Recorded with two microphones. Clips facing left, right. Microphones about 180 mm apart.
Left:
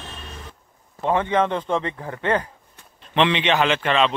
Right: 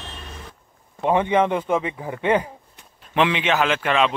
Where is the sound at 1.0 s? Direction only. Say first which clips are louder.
Right 2 dB; 15° right (ahead or behind).